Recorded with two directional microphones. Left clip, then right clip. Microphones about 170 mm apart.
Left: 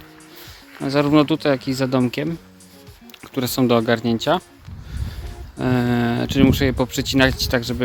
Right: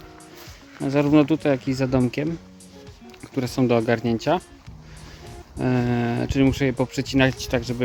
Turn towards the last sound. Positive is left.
turn(degrees=-5)  # may be behind; listen again after turning